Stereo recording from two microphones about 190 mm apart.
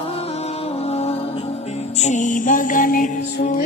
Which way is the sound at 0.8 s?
35° left (ahead or behind).